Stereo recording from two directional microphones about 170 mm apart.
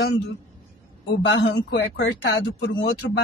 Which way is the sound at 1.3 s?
90° left.